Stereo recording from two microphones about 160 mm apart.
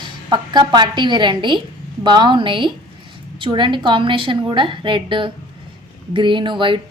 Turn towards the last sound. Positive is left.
turn(degrees=-30)  # may be behind; listen again after turning